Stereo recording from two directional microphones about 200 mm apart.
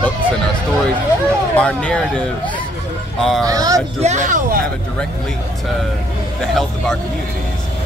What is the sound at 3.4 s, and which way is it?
Speech, 15° right (ahead or behind).